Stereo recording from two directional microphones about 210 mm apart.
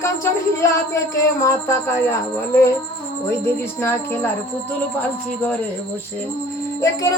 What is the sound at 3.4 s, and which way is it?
Music, 10° left (ahead or behind).